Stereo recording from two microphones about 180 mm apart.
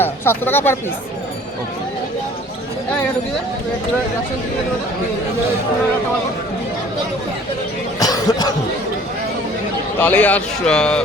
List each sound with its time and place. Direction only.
0.0 s speech: 10° left (ahead or behind)
7.9 s cough: 20° left (ahead or behind)
10.0 s a man's voice: 10° left (ahead or behind)